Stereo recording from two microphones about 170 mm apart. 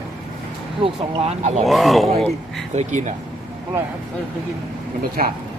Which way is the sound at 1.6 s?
Centre (ahead or behind).